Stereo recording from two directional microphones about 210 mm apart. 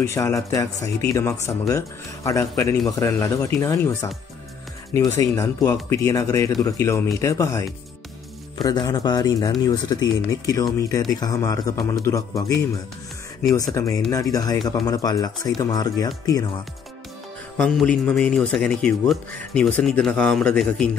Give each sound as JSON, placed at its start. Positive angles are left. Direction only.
{"t": 0.0, "sound": "speech", "side_deg": 15}
{"t": 13.7, "sound": "speech", "side_deg": 15}
{"t": 17.6, "sound": "a man's voice", "side_deg": 0}